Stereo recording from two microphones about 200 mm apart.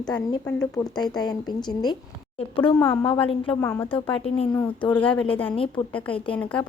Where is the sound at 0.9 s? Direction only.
20° left (ahead or behind).